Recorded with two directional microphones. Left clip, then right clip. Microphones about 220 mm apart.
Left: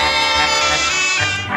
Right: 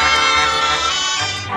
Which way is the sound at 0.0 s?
20° left (ahead or behind).